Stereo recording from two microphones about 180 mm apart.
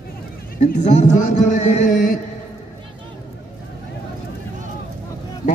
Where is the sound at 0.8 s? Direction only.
40° left (ahead or behind).